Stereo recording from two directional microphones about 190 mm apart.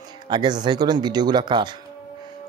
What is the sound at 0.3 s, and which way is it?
Speech, 20° right (ahead or behind).